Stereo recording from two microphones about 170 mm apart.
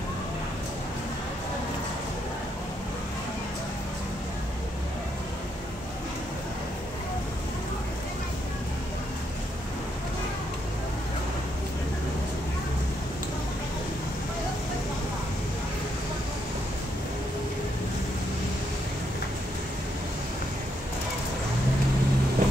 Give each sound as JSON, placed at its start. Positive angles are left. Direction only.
{"t": 22.4, "sound": "vehicle", "side_deg": -50}